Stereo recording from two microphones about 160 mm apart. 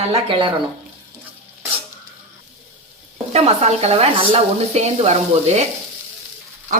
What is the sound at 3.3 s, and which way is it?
A woman's voice, 40° right (ahead or behind).